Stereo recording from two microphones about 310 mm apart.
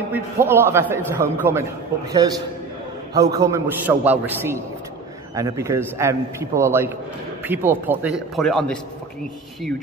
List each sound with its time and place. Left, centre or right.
0.1 s a man's voice: centre
3.2 s a man's voice: centre